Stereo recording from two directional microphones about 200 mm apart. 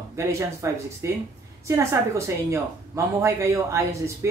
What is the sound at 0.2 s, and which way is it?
Speech, 15° right (ahead or behind).